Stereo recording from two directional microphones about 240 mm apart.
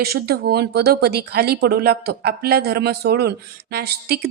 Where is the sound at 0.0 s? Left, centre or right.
Right.